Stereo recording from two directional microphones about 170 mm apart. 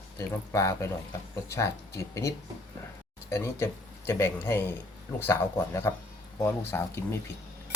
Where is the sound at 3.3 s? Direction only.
15° left (ahead or behind).